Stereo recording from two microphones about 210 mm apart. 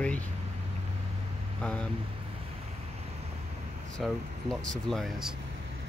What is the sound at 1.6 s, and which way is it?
Speech, 5° left (ahead or behind).